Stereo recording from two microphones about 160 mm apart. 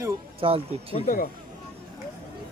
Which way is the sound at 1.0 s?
60° left (ahead or behind).